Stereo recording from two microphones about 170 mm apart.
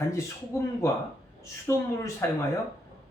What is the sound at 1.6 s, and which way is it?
Speech, 15° left (ahead or behind).